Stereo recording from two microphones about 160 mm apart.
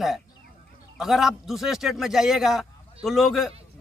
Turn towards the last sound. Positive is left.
turn(degrees=0)  # may be behind; listen again after turning